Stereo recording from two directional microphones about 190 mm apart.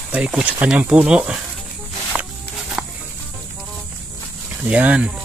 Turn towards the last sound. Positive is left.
turn(degrees=-5)  # may be behind; listen again after turning